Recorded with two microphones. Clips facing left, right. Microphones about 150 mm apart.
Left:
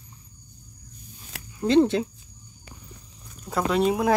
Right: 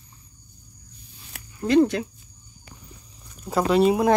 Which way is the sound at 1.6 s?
25° left (ahead or behind).